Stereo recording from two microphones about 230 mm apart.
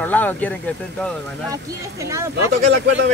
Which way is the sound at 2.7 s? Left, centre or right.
Right.